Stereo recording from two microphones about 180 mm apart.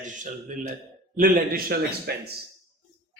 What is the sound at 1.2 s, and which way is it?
A man's voice, 55° right (ahead or behind).